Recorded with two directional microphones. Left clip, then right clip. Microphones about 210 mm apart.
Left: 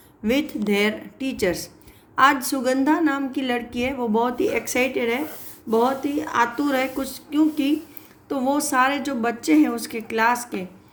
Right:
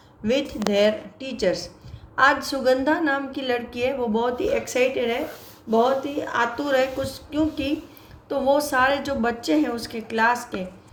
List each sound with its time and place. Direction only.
0.3 s a woman's voice: 40° left (ahead or behind)